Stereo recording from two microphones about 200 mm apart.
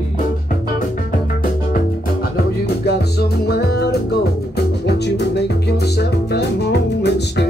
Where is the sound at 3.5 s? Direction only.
55° left (ahead or behind).